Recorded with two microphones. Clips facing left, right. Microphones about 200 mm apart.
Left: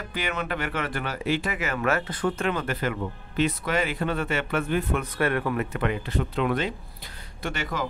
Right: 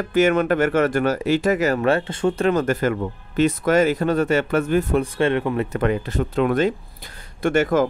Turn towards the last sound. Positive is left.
turn(degrees=-50)  # may be behind; listen again after turning